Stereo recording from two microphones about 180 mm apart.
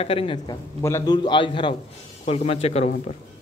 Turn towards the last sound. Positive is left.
turn(degrees=40)  # may be behind; listen again after turning